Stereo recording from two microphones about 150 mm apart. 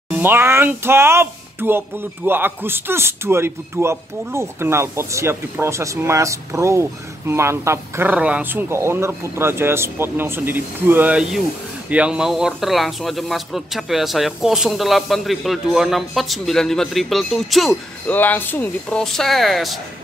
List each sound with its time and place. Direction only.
0.1 s speech: 15° right (ahead or behind)
18.0 s speech: 10° left (ahead or behind)